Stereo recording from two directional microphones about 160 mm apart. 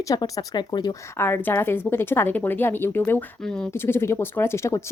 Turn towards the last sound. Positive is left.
turn(degrees=15)  # may be behind; listen again after turning